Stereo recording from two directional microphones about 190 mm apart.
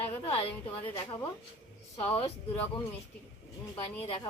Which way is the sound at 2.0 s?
30° left (ahead or behind).